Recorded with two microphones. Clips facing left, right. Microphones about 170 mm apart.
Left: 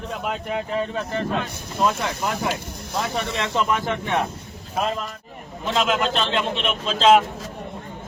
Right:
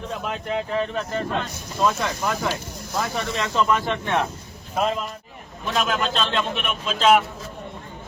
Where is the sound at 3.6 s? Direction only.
20° left (ahead or behind).